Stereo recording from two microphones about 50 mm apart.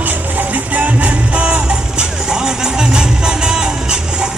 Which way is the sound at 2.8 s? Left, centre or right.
Centre.